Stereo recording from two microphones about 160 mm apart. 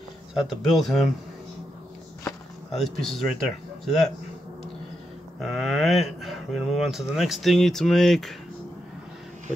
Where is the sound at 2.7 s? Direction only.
Centre (ahead or behind).